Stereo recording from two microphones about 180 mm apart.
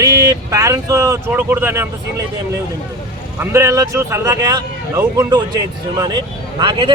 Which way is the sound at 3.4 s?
15° right (ahead or behind).